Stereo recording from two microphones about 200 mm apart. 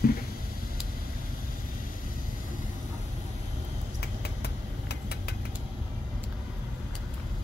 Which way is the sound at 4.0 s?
55° left (ahead or behind).